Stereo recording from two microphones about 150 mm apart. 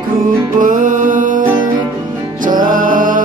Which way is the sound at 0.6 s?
60° right (ahead or behind).